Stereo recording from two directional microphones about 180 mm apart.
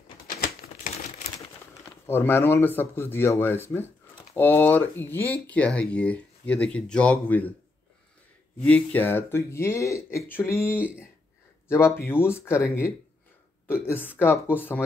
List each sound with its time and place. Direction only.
0.6 s crumpling: 55° left (ahead or behind)
1.9 s speech: 10° left (ahead or behind)
8.6 s speech: 10° left (ahead or behind)